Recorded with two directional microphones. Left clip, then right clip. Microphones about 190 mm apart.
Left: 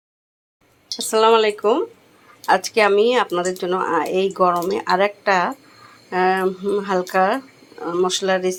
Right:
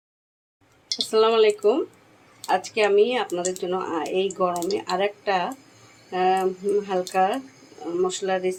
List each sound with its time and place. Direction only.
1.1 s speech: 10° left (ahead or behind)
2.5 s speech: 25° left (ahead or behind)